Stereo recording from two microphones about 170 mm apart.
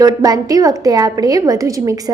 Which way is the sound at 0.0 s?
20° right (ahead or behind).